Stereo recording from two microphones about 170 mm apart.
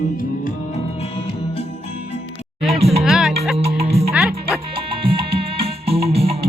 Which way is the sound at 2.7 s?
35° right (ahead or behind).